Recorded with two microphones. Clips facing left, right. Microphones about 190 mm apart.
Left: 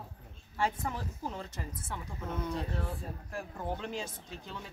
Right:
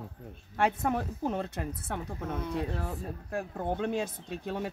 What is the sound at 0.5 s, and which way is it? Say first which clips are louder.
Speech: right 6 dB; 60° right (ahead or behind).